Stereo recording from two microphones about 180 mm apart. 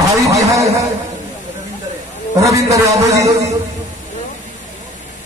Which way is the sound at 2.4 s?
15° right (ahead or behind).